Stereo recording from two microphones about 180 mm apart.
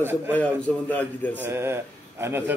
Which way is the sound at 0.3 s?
5° left (ahead or behind).